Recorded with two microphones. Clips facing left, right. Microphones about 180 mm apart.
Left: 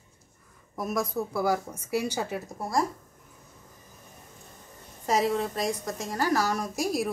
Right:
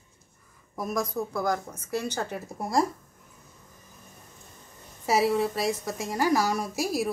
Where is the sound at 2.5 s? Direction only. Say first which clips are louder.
Right 3 dB; 25° right (ahead or behind).